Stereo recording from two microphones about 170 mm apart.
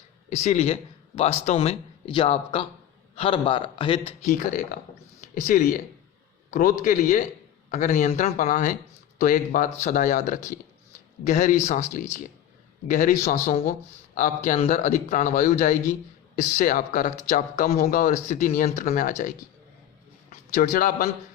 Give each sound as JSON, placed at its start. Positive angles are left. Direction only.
{"t": 0.3, "sound": "a man's voice", "side_deg": 40}
{"t": 4.3, "sound": "a man's voice", "side_deg": 50}
{"t": 20.3, "sound": "a man's voice", "side_deg": 55}